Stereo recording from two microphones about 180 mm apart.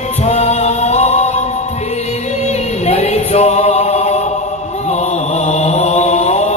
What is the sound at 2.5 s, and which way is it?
Music, 35° left (ahead or behind).